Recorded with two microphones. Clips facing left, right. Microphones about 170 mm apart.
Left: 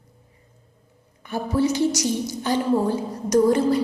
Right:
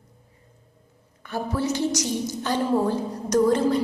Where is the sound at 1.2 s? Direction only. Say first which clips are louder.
Left 4 dB; 15° left (ahead or behind).